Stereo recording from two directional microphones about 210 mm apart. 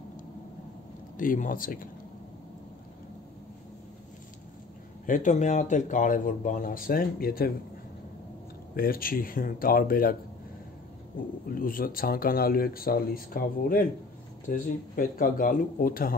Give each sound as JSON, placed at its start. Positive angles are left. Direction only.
{"t": 1.1, "sound": "speech", "side_deg": 40}
{"t": 5.0, "sound": "speech", "side_deg": 40}
{"t": 8.7, "sound": "speech", "side_deg": 45}
{"t": 11.4, "sound": "speech", "side_deg": 40}